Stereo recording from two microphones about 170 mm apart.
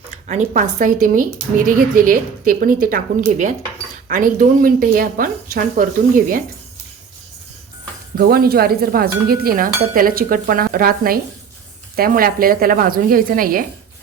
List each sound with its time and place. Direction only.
0.3 s speech: 45° right (ahead or behind)
8.3 s speech: 65° right (ahead or behind)